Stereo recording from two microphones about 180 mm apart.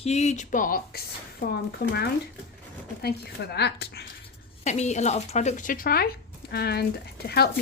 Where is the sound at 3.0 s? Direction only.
60° left (ahead or behind).